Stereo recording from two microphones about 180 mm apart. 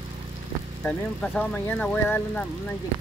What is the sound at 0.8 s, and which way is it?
Speech, 5° left (ahead or behind).